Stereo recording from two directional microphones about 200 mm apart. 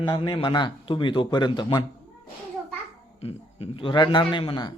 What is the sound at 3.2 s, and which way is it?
Speech, 30° left (ahead or behind).